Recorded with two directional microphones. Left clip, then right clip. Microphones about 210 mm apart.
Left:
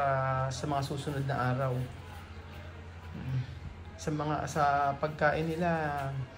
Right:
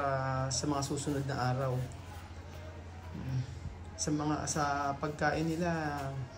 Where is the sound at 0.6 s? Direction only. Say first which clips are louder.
Left 1 dB; 20° right (ahead or behind).